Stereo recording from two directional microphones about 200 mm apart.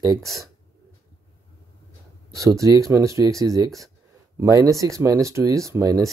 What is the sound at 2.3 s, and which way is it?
Speech, 15° right (ahead or behind).